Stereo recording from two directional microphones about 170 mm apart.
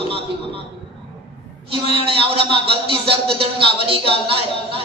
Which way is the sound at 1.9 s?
35° right (ahead or behind).